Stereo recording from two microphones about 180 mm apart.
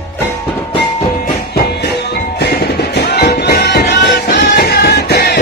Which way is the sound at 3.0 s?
60° left (ahead or behind).